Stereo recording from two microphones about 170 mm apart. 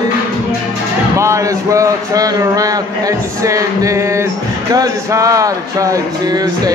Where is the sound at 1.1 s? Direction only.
15° right (ahead or behind).